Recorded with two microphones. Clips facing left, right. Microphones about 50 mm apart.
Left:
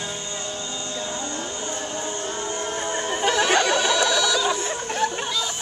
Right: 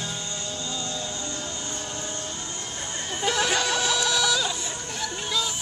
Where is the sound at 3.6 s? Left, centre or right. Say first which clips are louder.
Left 5 dB; centre.